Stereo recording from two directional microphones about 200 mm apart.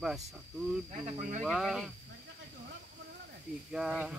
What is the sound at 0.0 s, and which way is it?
Speech, centre (ahead or behind).